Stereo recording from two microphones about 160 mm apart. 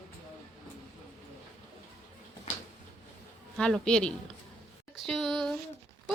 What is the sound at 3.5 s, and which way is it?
Speech, 5° left (ahead or behind).